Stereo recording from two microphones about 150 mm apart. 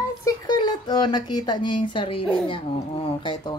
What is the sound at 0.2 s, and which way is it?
Speech, 25° left (ahead or behind).